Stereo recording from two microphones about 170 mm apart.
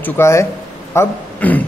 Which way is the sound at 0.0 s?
15° left (ahead or behind).